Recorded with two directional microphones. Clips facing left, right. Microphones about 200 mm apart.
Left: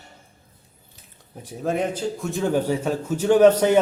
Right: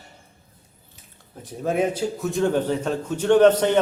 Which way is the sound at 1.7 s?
10° right (ahead or behind).